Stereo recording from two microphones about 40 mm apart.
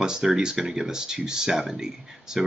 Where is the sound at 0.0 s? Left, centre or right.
Centre.